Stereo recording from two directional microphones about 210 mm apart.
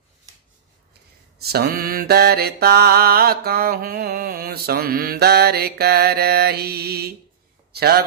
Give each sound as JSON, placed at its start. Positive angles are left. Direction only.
{"t": 1.4, "sound": "mantra", "side_deg": -50}
{"t": 7.7, "sound": "a man's voice", "side_deg": -50}